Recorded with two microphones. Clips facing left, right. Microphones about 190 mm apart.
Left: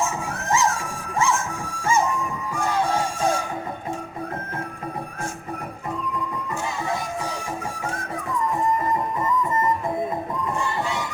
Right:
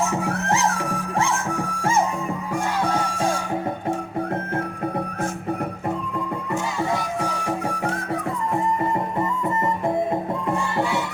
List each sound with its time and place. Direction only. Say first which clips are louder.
0.1 s music: right 2 dB; 65° right (ahead or behind)